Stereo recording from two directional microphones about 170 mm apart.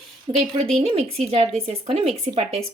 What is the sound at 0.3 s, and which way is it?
Speech, 30° right (ahead or behind).